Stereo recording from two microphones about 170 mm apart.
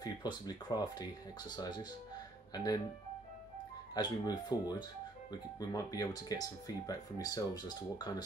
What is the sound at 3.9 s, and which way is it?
Speech, 25° left (ahead or behind).